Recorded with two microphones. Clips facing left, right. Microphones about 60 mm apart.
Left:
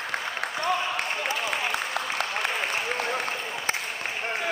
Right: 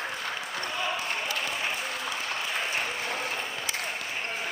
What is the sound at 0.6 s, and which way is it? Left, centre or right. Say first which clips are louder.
Applause: left 5 dB; left.